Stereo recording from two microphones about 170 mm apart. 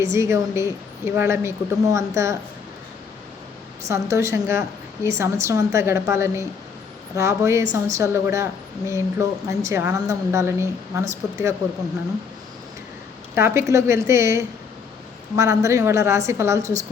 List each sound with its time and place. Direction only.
0.0 s a woman's voice: 15° right (ahead or behind)
3.8 s a woman's voice: 15° right (ahead or behind)
13.3 s a woman's voice: 15° right (ahead or behind)